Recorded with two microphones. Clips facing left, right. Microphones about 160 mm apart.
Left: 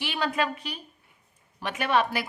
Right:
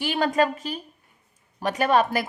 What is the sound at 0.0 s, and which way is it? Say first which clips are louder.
A woman's voice: right 6 dB; 45° right (ahead or behind).